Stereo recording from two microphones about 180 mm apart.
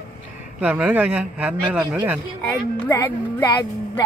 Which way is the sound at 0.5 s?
10° right (ahead or behind).